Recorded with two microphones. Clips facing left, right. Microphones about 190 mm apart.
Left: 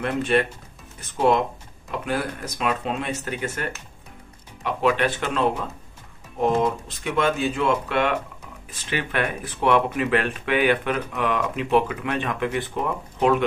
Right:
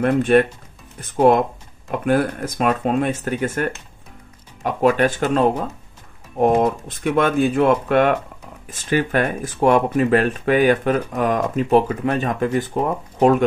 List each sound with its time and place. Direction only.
0.0 s speech: 50° right (ahead or behind)